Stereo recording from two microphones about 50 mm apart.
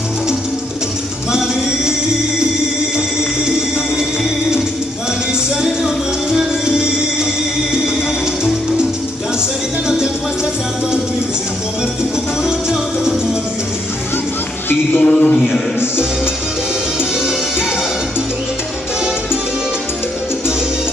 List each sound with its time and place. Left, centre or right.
5.6 s music: centre
12.4 s music: centre
15.0 s a sound: left